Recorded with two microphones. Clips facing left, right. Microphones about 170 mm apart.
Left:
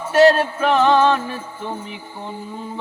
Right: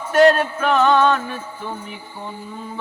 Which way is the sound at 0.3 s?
30° left (ahead or behind).